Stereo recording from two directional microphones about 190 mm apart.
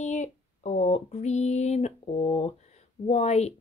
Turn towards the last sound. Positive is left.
turn(degrees=35)  # may be behind; listen again after turning